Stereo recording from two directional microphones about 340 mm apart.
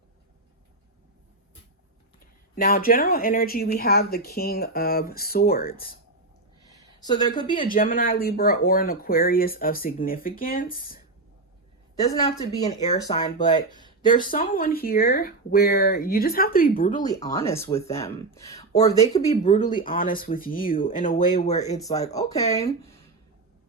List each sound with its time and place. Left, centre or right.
2.6 s speech: left
7.0 s speech: centre
7.5 s speech: left
11.9 s speech: centre
13.7 s speech: centre
14.0 s speech: centre
14.3 s speech: left
16.9 s speech: centre